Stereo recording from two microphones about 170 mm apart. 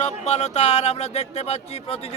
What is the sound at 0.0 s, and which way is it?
Speech, 40° left (ahead or behind).